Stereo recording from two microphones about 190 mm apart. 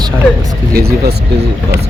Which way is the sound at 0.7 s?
55° right (ahead or behind).